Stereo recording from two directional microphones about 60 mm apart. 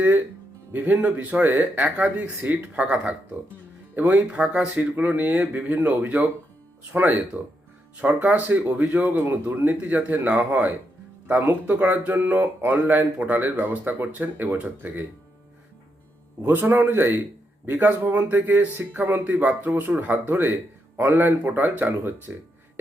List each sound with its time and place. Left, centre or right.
0.7 s speech: right
16.4 s speech: right